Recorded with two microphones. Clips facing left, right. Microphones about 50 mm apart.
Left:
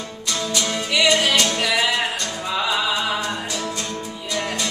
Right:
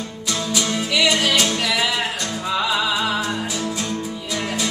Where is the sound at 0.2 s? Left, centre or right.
Centre.